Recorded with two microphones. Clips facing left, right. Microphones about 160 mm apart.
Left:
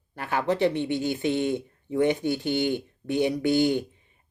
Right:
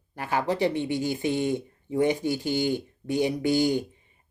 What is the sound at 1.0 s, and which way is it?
Speech, 60° left (ahead or behind).